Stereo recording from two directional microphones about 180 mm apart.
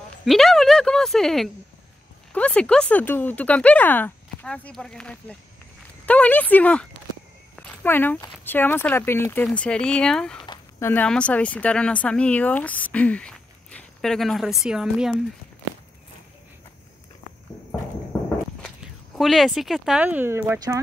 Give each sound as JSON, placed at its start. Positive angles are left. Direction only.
{"t": 0.2, "sound": "speech", "side_deg": 0}
{"t": 10.4, "sound": "a sound", "side_deg": 25}
{"t": 10.9, "sound": "speech", "side_deg": 5}
{"t": 18.8, "sound": "speech", "side_deg": 0}